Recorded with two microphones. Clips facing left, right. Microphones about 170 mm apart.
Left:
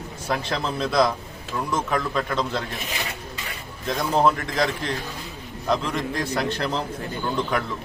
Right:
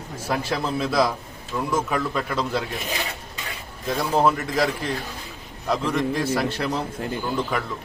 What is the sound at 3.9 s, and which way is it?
A man's voice, 5° right (ahead or behind).